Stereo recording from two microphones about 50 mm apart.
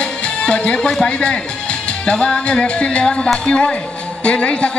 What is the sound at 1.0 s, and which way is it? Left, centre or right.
A man's voice, centre.